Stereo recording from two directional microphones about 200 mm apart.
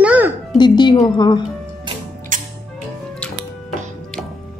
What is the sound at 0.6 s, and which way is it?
Speech, 20° left (ahead or behind).